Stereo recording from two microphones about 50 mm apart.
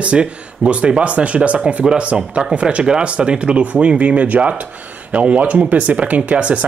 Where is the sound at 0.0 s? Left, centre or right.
Right.